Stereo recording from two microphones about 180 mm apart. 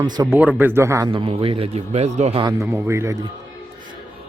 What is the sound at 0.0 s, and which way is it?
Speech, 20° right (ahead or behind).